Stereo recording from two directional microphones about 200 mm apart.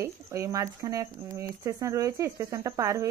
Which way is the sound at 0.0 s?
15° right (ahead or behind).